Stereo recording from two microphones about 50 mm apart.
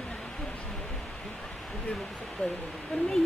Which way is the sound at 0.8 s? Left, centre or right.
Centre.